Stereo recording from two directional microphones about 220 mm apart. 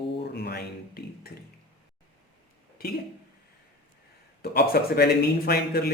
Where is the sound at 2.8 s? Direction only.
45° left (ahead or behind).